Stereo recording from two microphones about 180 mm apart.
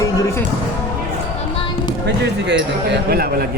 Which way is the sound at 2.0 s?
70° right (ahead or behind).